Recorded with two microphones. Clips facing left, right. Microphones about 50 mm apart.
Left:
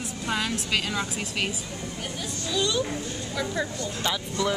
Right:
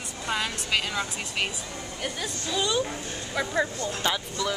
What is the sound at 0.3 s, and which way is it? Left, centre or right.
Speech, centre.